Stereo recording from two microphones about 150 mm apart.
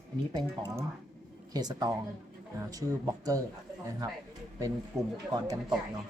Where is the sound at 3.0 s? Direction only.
25° right (ahead or behind).